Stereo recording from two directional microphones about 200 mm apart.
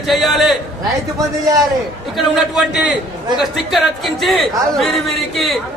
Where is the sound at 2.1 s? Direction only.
Centre (ahead or behind).